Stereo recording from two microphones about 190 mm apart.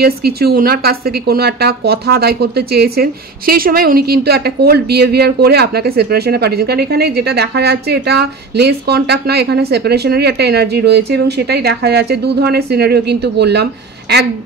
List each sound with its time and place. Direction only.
0.0 s speech: 55° right (ahead or behind)